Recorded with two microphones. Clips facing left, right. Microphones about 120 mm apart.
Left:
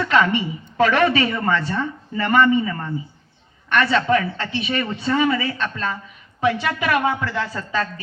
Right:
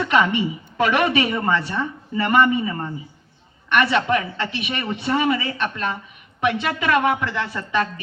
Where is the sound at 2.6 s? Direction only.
25° right (ahead or behind).